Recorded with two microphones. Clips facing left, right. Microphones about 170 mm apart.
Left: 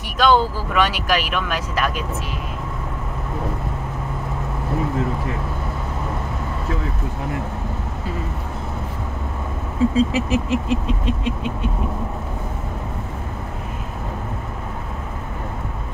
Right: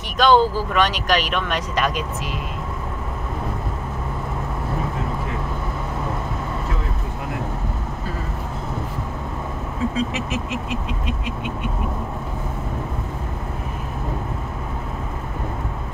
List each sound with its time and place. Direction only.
0.2 s speech: 5° left (ahead or behind)
9.9 s speech: 30° left (ahead or behind)